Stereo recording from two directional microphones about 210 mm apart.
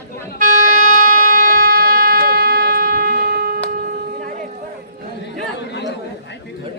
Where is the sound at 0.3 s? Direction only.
40° right (ahead or behind).